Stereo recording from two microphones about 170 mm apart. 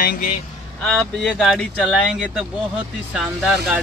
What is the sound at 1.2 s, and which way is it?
Speech, centre (ahead or behind).